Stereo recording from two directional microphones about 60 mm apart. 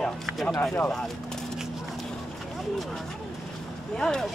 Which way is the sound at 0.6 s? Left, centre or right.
Left.